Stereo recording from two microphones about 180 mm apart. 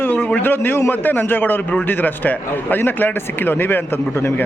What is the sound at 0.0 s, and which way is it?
A man's voice, 10° left (ahead or behind).